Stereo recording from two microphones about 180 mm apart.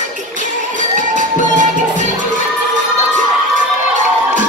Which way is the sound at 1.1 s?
45° right (ahead or behind).